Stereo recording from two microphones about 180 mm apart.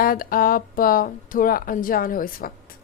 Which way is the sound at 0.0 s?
55° left (ahead or behind).